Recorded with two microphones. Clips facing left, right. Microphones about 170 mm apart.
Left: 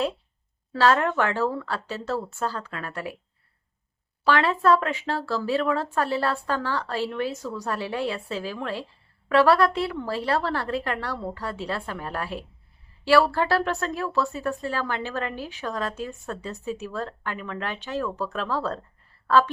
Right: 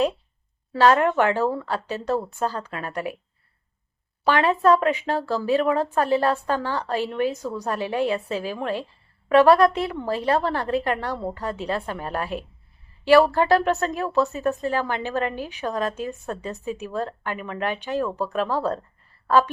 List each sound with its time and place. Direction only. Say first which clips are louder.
0.7 s a woman's voice: right 3 dB; 20° right (ahead or behind)
4.2 s a woman's voice: right 2 dB; 15° right (ahead or behind)